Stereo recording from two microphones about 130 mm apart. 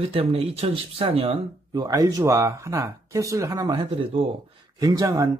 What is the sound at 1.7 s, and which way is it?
Speech, 30° right (ahead or behind).